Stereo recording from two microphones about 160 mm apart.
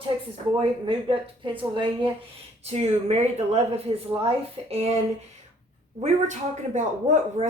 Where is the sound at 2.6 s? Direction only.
40° right (ahead or behind).